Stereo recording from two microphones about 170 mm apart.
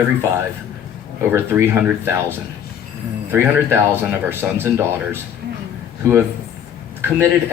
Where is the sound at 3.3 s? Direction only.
15° right (ahead or behind).